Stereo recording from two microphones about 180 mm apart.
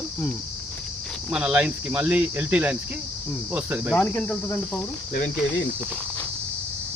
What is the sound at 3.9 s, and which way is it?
Cricket, 10° left (ahead or behind).